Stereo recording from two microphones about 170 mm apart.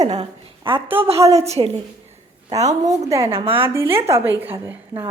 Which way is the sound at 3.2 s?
35° right (ahead or behind).